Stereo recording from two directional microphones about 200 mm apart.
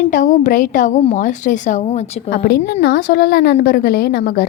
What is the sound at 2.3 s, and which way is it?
A woman's voice, 55° left (ahead or behind).